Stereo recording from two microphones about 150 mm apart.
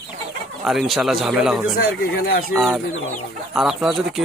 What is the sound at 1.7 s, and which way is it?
Speech, 75° left (ahead or behind).